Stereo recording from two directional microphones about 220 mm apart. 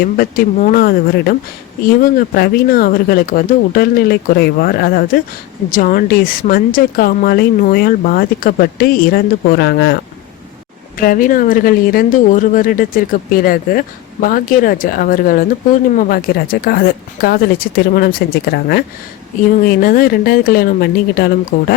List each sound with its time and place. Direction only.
0.0 s a woman's voice: 40° left (ahead or behind)